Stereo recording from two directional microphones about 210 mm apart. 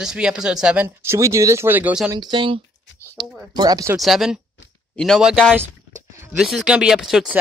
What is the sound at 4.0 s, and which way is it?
Speech, centre (ahead or behind).